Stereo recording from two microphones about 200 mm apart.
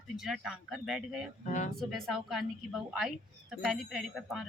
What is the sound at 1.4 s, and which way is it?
Speech, 40° left (ahead or behind).